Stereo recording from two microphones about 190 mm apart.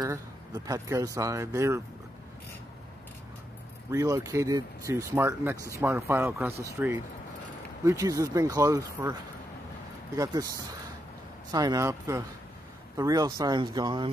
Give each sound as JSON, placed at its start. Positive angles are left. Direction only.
{"t": 0.0, "sound": "speech", "side_deg": -20}
{"t": 3.9, "sound": "speech", "side_deg": -15}
{"t": 10.1, "sound": "speech", "side_deg": -20}
{"t": 11.5, "sound": "speech", "side_deg": -20}